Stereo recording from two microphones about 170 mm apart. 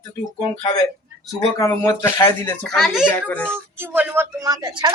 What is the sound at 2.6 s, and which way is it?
Speech, centre (ahead or behind).